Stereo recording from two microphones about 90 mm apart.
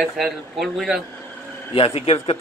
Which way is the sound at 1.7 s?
90° left.